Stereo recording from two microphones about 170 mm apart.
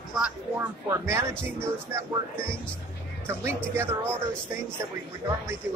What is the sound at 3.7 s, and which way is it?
Speech, 15° right (ahead or behind).